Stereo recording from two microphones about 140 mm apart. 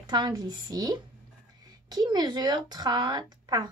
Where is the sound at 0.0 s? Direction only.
30° right (ahead or behind).